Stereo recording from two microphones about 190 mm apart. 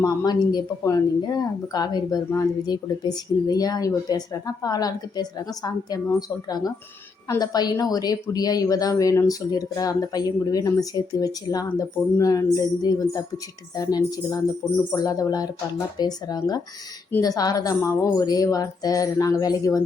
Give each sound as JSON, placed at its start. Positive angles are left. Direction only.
{"t": 0.0, "sound": "speech", "side_deg": 20}